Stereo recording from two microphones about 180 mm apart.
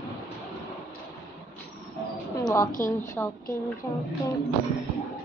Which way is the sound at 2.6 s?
50° left (ahead or behind).